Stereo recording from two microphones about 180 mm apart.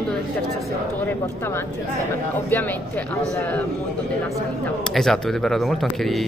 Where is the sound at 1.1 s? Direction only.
15° left (ahead or behind).